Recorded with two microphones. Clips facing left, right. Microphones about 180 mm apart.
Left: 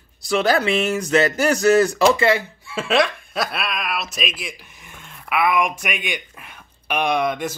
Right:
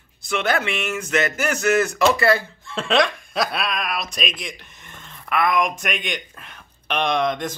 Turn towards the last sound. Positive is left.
turn(degrees=5)  # may be behind; listen again after turning